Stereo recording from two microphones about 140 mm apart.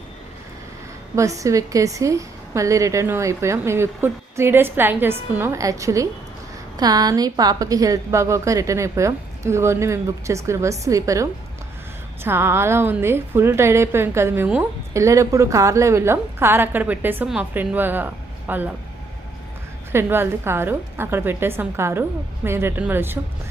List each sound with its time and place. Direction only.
1.1 s a woman's voice: 25° right (ahead or behind)
19.9 s a woman's voice: 15° right (ahead or behind)